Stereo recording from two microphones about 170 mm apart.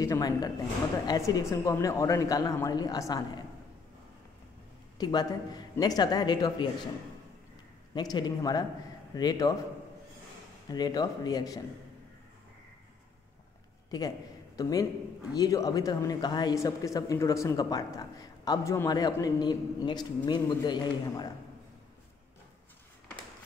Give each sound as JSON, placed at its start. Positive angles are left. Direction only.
{"t": 0.0, "sound": "speech", "side_deg": 20}
{"t": 4.9, "sound": "speech", "side_deg": 25}
{"t": 7.9, "sound": "speech", "side_deg": 25}
{"t": 10.7, "sound": "speech", "side_deg": 25}
{"t": 13.8, "sound": "a man's voice", "side_deg": 25}